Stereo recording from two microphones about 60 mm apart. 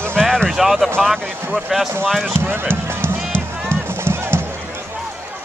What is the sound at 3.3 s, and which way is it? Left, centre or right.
Music, right.